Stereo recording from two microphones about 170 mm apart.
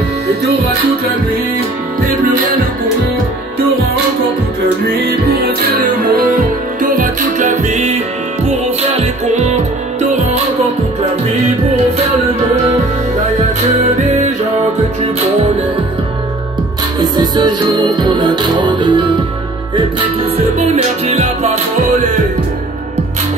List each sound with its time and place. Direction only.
6.3 s music: 55° right (ahead or behind)
17.0 s music: 25° right (ahead or behind)
20.5 s music: 40° right (ahead or behind)